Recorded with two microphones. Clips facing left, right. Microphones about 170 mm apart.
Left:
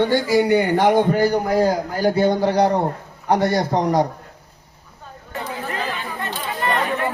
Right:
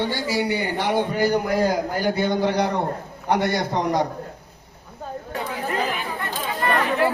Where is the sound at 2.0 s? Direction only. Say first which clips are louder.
Left 6 dB; 40° left (ahead or behind).